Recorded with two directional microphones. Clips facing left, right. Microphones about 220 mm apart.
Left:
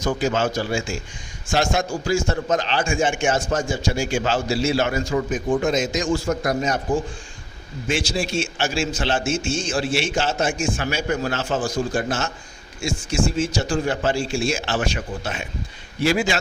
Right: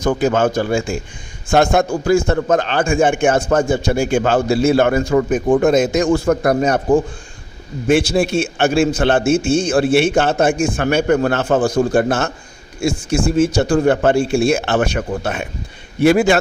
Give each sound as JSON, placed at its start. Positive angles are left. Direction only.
{"t": 0.0, "sound": "a man's voice", "side_deg": -55}